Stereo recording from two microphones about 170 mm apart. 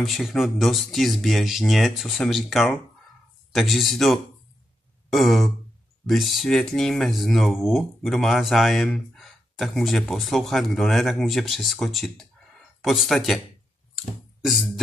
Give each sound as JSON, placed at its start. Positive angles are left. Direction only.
{"t": 0.0, "sound": "speech", "side_deg": 0}
{"t": 14.4, "sound": "music", "side_deg": 0}